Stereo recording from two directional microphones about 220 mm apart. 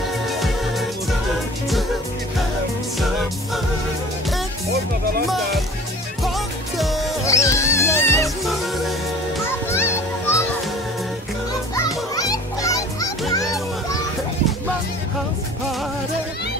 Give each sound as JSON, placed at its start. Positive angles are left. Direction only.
{"t": 0.3, "sound": "music", "side_deg": 0}
{"t": 6.2, "sound": "music", "side_deg": 0}
{"t": 7.2, "sound": "music", "side_deg": 15}
{"t": 9.7, "sound": "children playing", "side_deg": 10}
{"t": 11.7, "sound": "children playing", "side_deg": 15}